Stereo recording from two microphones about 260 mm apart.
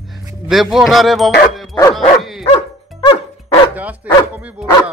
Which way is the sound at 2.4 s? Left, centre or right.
Centre.